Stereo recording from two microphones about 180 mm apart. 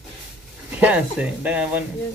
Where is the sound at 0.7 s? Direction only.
5° right (ahead or behind).